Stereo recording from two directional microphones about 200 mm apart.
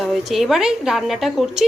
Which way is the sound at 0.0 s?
Centre (ahead or behind).